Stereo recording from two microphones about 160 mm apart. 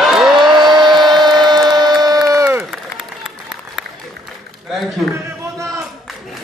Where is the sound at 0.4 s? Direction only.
30° right (ahead or behind).